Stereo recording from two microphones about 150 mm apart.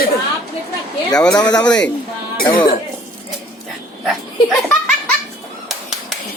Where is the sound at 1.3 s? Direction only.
25° left (ahead or behind).